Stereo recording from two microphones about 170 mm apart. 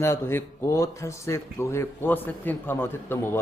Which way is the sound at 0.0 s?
15° left (ahead or behind).